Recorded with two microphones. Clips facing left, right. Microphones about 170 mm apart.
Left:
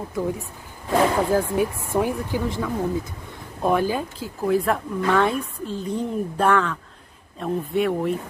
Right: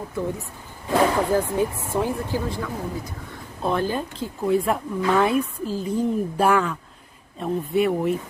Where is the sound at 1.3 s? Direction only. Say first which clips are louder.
Left 1 dB; 15° left (ahead or behind).